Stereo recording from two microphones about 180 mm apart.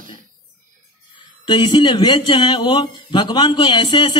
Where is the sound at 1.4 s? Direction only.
25° left (ahead or behind).